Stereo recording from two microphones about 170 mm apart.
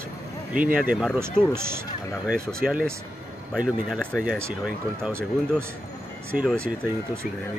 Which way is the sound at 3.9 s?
5° right (ahead or behind).